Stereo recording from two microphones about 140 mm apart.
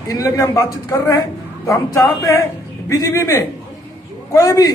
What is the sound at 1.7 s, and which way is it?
A man's voice, 20° left (ahead or behind).